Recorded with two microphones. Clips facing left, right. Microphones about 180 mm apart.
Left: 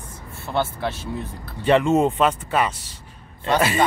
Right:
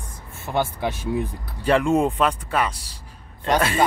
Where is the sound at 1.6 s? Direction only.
Centre (ahead or behind).